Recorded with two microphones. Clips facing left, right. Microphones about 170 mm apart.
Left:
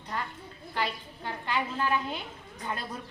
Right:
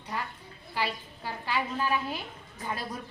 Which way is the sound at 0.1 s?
10° right (ahead or behind).